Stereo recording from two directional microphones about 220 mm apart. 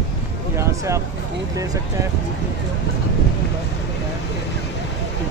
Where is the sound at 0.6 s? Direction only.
15° right (ahead or behind).